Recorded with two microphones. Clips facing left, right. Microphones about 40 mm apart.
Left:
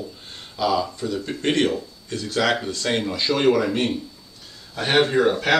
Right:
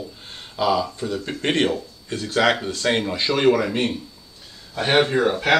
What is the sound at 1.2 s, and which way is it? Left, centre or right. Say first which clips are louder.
Speech: even; right.